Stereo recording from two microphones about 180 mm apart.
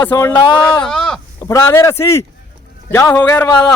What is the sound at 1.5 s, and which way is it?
Speech, 15° left (ahead or behind).